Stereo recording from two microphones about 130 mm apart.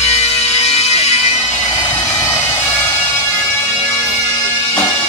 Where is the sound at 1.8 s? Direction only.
25° left (ahead or behind).